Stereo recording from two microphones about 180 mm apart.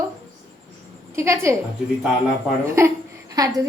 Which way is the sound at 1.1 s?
15° right (ahead or behind).